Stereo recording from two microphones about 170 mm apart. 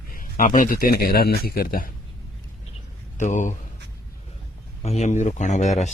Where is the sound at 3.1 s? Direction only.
45° left (ahead or behind).